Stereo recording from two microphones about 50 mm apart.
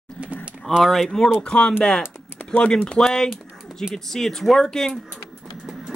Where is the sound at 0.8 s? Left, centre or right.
Centre.